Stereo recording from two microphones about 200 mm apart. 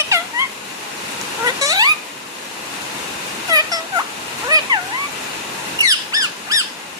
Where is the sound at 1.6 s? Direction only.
20° right (ahead or behind).